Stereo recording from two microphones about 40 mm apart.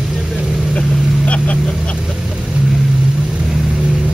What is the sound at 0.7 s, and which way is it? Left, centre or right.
Vehicle, left.